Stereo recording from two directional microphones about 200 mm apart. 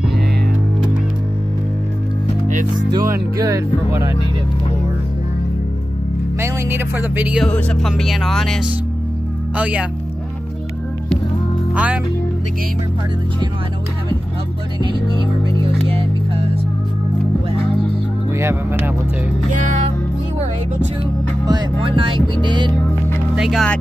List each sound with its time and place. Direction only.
2.9 s speech: 15° right (ahead or behind)
6.4 s speech: 10° right (ahead or behind)
7.4 s music: 5° left (ahead or behind)
9.6 s speech: 5° right (ahead or behind)
11.7 s speech: 5° right (ahead or behind)
18.3 s speech: 15° right (ahead or behind)
21.5 s music: 25° right (ahead or behind)
23.3 s music: centre (ahead or behind)